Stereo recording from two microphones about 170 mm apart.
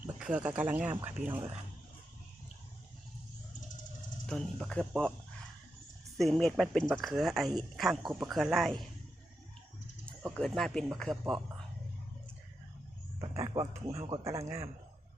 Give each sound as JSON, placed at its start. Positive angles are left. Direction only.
{"t": 0.0, "sound": "speech", "side_deg": -5}
{"t": 4.3, "sound": "speech", "side_deg": 5}
{"t": 6.1, "sound": "speech", "side_deg": 0}
{"t": 10.2, "sound": "speech", "side_deg": 0}
{"t": 13.1, "sound": "speech", "side_deg": -20}